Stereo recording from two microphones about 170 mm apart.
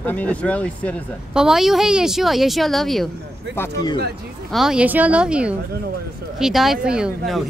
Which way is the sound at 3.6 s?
25° left (ahead or behind).